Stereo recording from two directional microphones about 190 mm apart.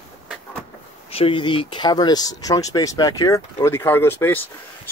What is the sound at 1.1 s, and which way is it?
Speech, 30° left (ahead or behind).